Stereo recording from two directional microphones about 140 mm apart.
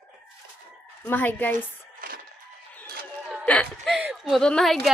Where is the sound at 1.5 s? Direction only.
85° right.